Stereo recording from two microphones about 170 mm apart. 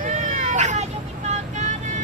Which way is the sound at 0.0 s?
50° right (ahead or behind).